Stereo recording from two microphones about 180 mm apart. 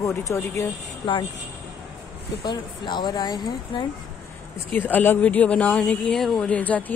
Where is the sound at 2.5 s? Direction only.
25° left (ahead or behind).